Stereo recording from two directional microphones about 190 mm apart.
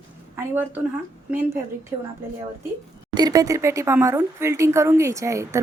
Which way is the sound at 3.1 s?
20° right (ahead or behind).